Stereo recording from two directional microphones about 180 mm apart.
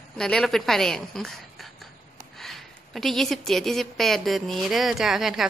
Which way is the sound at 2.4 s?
Centre (ahead or behind).